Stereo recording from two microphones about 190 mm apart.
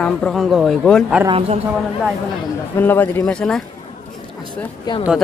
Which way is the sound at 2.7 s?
10° left (ahead or behind).